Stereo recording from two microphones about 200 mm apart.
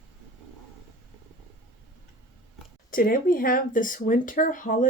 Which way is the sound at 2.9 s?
45° left (ahead or behind).